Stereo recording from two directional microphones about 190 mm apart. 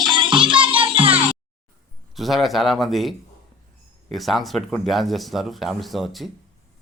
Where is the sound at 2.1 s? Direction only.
Centre (ahead or behind).